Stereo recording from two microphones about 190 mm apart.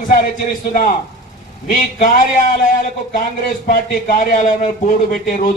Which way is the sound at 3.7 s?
50° left (ahead or behind).